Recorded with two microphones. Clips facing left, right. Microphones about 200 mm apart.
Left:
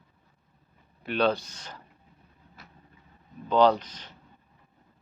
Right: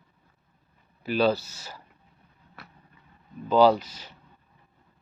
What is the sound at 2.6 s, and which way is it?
Vehicle, 65° right (ahead or behind).